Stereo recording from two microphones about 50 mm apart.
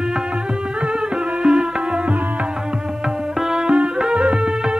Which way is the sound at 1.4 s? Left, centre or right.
Centre.